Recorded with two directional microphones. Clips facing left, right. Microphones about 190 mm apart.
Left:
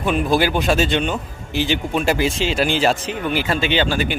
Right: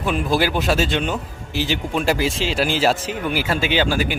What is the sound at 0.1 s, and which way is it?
A man's voice, centre (ahead or behind).